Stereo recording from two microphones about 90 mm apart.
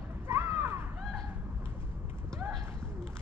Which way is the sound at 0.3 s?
25° right (ahead or behind).